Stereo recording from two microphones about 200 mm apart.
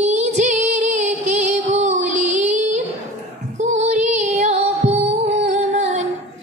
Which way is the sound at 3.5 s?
35° right (ahead or behind).